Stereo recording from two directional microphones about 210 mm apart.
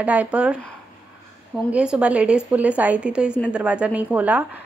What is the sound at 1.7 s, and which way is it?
A woman's voice, 5° right (ahead or behind).